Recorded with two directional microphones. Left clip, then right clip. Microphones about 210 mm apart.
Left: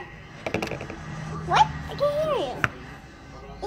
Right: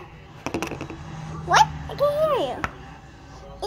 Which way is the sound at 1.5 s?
50° right (ahead or behind).